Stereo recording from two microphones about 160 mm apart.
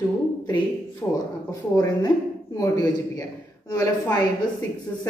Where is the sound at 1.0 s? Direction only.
20° left (ahead or behind).